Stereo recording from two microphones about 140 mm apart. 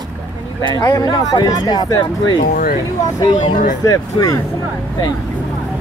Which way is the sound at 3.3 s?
70° left (ahead or behind).